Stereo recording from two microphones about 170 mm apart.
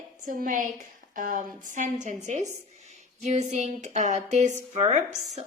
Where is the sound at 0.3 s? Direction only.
50° right (ahead or behind).